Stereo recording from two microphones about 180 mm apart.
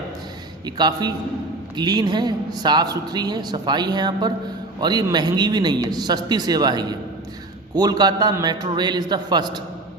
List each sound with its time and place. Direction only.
0.6 s a woman's voice: 20° right (ahead or behind)